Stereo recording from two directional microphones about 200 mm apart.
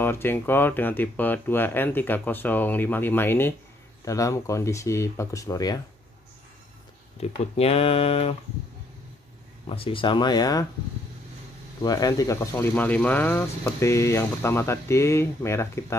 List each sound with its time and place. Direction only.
0.0 s speech: 10° left (ahead or behind)
7.2 s speech: 30° left (ahead or behind)
9.7 s speech: 25° left (ahead or behind)
11.8 s speech: 20° left (ahead or behind)